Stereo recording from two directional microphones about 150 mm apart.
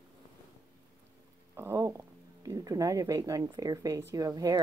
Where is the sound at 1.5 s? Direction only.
20° right (ahead or behind).